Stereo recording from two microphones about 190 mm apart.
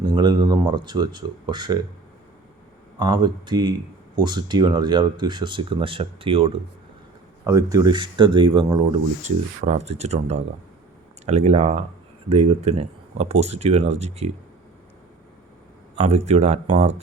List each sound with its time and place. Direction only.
0.0 s speech: 20° right (ahead or behind)
3.0 s speech: 25° right (ahead or behind)
7.4 s speech: 15° right (ahead or behind); by 14.3 s 35° right (ahead or behind)
16.0 s speech: 35° right (ahead or behind)